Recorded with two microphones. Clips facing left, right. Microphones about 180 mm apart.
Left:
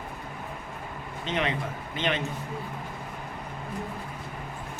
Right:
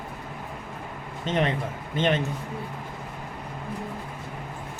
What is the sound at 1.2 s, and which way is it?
Speech, 40° right (ahead or behind).